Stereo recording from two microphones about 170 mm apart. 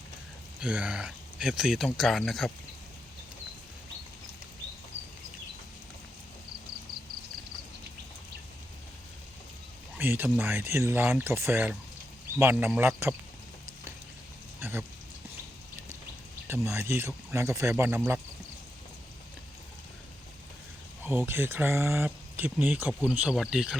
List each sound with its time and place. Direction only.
0.6 s speech: 5° right (ahead or behind)
10.0 s speech: 10° right (ahead or behind)
14.6 s rain: 10° right (ahead or behind)
16.5 s speech: 15° right (ahead or behind)
21.0 s speech: 15° right (ahead or behind)